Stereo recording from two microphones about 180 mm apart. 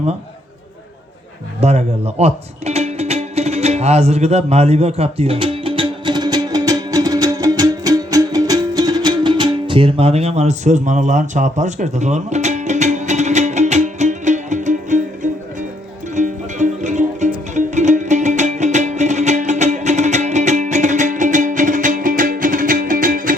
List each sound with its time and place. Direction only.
1.6 s music: 35° right (ahead or behind)